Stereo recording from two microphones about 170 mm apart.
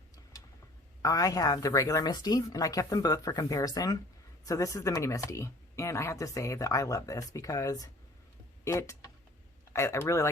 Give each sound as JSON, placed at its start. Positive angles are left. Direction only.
{"t": 1.0, "sound": "speech", "side_deg": 20}